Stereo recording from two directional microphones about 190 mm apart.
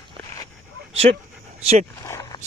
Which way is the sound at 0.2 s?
15° left (ahead or behind).